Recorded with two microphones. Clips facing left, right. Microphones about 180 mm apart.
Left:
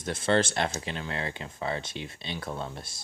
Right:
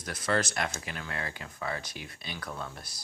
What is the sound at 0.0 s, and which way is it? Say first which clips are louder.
Speech: left 5 dB; 25° left (ahead or behind).